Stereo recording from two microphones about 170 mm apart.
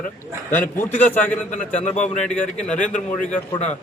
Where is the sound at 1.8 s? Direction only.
45° left (ahead or behind).